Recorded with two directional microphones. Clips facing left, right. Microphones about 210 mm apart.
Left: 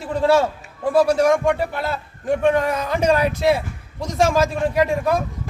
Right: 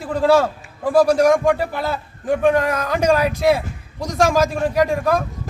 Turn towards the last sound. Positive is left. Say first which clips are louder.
# right 1 dB
turn(degrees=0)  # may be behind; listen again after turning